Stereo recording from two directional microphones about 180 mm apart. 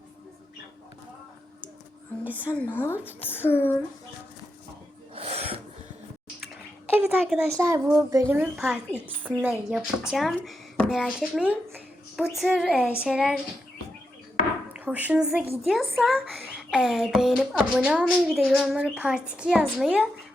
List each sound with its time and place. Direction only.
2.2 s a woman's voice: 10° right (ahead or behind)
2.5 s a woman's voice: 10° left (ahead or behind)
5.1 s a sound: 35° right (ahead or behind)
6.9 s a woman's voice: 10° right (ahead or behind)
14.7 s a woman's voice: 10° right (ahead or behind)